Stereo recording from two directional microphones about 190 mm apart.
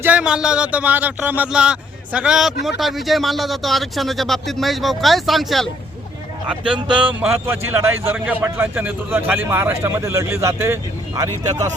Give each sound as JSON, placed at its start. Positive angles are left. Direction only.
{"t": 0.0, "sound": "speech", "side_deg": -5}
{"t": 6.7, "sound": "speech", "side_deg": -25}
{"t": 7.0, "sound": "a man's voice", "side_deg": -10}